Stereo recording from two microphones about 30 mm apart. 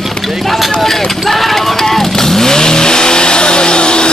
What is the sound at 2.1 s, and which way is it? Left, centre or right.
Vehicle, centre.